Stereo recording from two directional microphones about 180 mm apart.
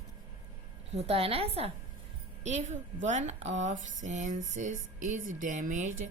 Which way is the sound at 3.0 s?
40° right (ahead or behind).